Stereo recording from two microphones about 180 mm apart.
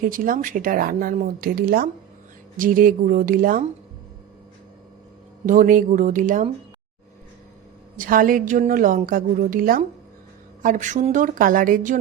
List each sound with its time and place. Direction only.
0.0 s speech: 50° right (ahead or behind)
5.5 s speech: 50° right (ahead or behind)
7.9 s speech: 50° right (ahead or behind)